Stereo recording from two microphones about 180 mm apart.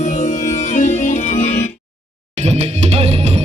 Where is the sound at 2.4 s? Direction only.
40° right (ahead or behind).